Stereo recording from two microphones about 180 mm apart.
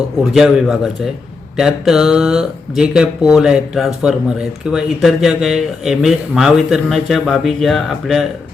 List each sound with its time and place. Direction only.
0.3 s speech: centre (ahead or behind)